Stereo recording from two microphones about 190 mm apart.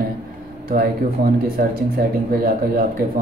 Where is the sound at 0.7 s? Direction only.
50° right (ahead or behind).